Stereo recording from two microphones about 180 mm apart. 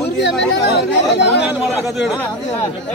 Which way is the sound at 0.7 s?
65° left (ahead or behind).